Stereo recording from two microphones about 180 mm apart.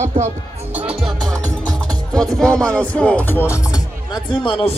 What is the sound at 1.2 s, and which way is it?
Music, 20° right (ahead or behind).